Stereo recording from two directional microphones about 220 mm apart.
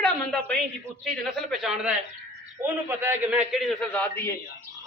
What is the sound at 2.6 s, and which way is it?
A man's voice, 10° right (ahead or behind).